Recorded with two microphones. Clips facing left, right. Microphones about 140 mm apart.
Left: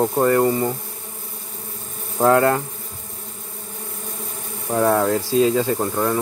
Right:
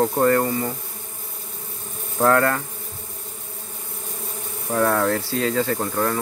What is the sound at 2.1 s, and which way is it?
Insect, 20° left (ahead or behind).